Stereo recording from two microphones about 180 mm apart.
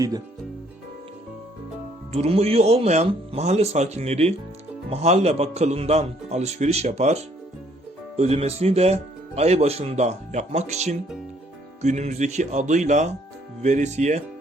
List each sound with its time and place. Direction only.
2.1 s speech: 35° right (ahead or behind)